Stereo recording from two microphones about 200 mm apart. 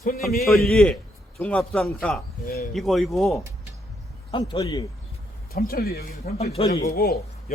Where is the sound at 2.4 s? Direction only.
45° left (ahead or behind).